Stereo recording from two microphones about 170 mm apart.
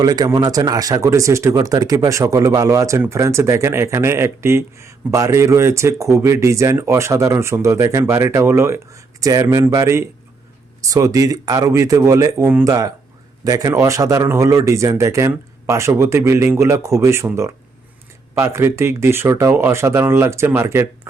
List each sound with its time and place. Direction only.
0.0 s speech: 25° right (ahead or behind)